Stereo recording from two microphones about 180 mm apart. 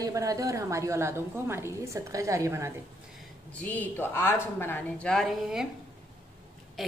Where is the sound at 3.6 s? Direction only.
10° left (ahead or behind).